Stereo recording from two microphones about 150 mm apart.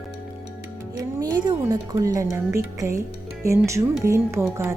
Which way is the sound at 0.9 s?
25° right (ahead or behind).